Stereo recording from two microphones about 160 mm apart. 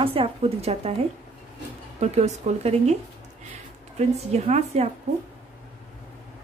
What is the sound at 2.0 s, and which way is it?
Speech, 45° right (ahead or behind).